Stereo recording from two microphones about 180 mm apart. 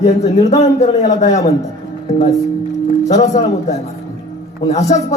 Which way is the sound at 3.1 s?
40° left (ahead or behind).